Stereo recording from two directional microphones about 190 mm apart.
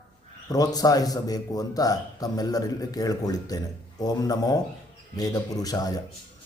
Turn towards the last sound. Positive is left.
turn(degrees=20)  # may be behind; listen again after turning